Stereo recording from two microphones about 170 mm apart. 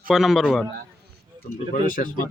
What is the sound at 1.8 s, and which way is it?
Speech, 50° left (ahead or behind).